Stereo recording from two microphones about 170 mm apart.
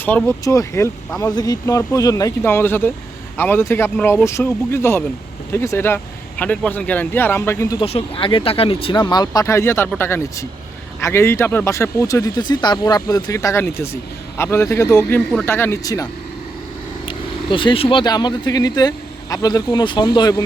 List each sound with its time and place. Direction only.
0.0 s speech: 10° left (ahead or behind)
7.8 s speech: 35° left (ahead or behind)
17.1 s speech: 30° left (ahead or behind)